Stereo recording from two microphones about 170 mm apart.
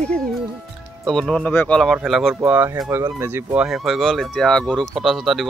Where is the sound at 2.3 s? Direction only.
10° right (ahead or behind).